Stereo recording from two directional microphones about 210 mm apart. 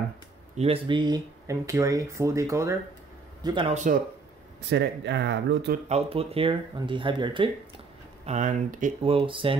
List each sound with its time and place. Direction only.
0.6 s speech: 25° right (ahead or behind)
3.7 s speech: 35° right (ahead or behind)
4.6 s speech: 55° right (ahead or behind)
5.9 s speech: 30° right (ahead or behind)
8.3 s speech: 35° right (ahead or behind)